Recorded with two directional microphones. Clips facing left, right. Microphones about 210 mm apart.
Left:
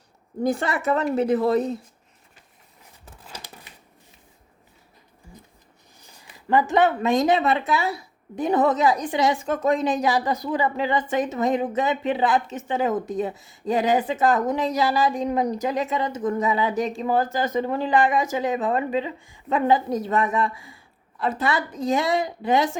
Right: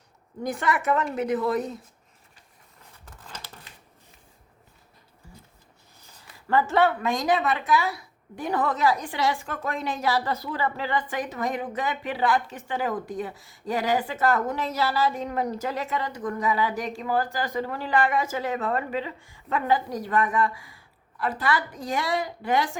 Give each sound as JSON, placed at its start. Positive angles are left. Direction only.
{"t": 0.4, "sound": "a woman's voice", "side_deg": 30}
{"t": 3.1, "sound": "crumpling", "side_deg": 10}
{"t": 6.1, "sound": "a woman's voice", "side_deg": 15}